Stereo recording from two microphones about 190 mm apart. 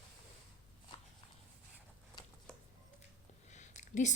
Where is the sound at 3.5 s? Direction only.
40° left (ahead or behind).